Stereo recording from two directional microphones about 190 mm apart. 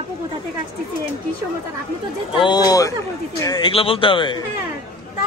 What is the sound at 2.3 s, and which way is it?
Speech, 25° left (ahead or behind).